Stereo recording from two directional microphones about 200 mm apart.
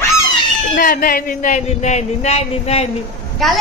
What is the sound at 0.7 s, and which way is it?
A man's voice, 45° left (ahead or behind).